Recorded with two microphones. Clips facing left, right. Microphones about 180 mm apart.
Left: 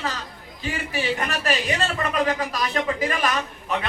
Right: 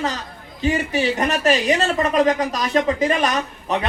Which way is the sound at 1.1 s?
40° right (ahead or behind).